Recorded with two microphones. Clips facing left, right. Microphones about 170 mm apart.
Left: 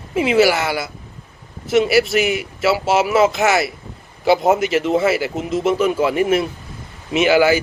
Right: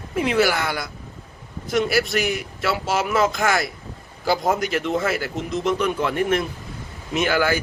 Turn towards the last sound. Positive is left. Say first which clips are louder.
# left 7 dB
turn(degrees=10)  # may be behind; listen again after turning